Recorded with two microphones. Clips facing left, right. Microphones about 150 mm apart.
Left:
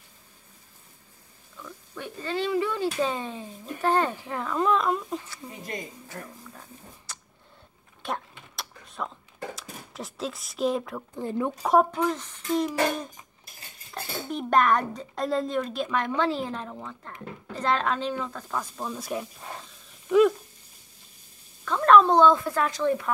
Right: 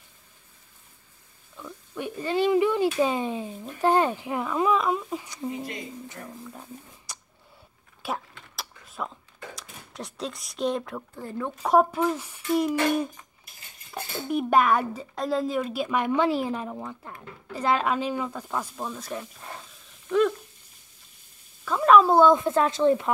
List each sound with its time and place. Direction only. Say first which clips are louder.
1.6 s speech: right 4 dB; 15° right (ahead or behind)
5.2 s speech: right 8 dB; 15° right (ahead or behind)
7.1 s a sound: right 2 dB; 15° right (ahead or behind)
8.0 s speech: even; 5° right (ahead or behind)
8.5 s a sound: even; 5° right (ahead or behind)
9.6 s speech: left 1 dB; centre (ahead or behind)
11.1 s speech: left 5 dB; 20° left (ahead or behind)
11.6 s speech: right 1 dB; centre (ahead or behind)
13.9 s speech: right 4 dB; 10° right (ahead or behind)
18.9 s speech: left 3 dB; 10° left (ahead or behind)
20.1 s a sound: left 3 dB; 5° left (ahead or behind)
21.6 s speech: even; 5° right (ahead or behind); by 23.1 s 25° right (ahead or behind)